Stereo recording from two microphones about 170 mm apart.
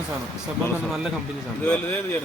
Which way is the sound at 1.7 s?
10° left (ahead or behind).